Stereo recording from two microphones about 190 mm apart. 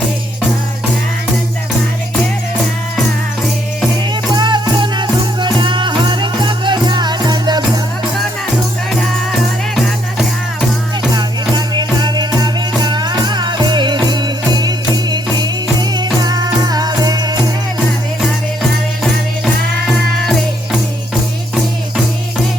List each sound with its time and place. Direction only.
4.1 s music: 25° right (ahead or behind)
9.7 s music: centre (ahead or behind)
11.1 s music: 20° right (ahead or behind)